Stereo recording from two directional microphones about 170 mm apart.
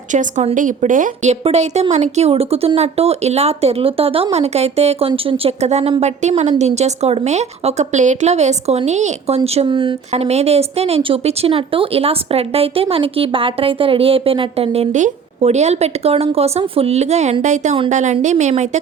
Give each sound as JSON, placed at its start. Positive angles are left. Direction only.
{"t": 0.1, "sound": "a woman's voice", "side_deg": -45}